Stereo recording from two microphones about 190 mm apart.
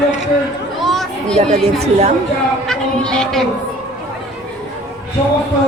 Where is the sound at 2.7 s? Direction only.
5° left (ahead or behind).